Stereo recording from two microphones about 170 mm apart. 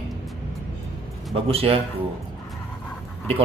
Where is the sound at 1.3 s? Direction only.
35° right (ahead or behind).